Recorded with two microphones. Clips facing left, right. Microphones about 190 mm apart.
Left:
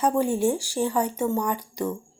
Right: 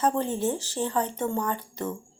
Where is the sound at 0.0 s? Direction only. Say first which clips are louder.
Left 4 dB; 10° left (ahead or behind).